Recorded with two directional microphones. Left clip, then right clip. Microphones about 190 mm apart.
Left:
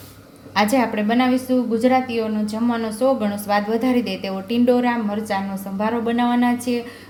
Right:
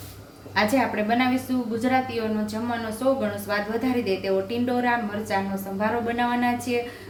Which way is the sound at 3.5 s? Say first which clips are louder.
Left 8 dB; 45° left (ahead or behind).